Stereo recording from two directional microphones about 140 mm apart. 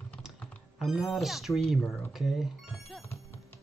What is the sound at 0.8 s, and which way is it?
Speech, centre (ahead or behind).